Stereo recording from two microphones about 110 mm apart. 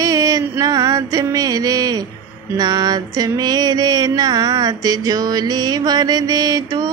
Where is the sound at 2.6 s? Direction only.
40° right (ahead or behind).